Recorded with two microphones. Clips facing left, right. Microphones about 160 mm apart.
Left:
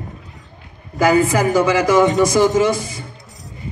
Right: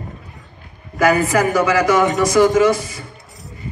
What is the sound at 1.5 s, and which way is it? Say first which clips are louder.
Mantra: left 3 dB; 25° left (ahead or behind).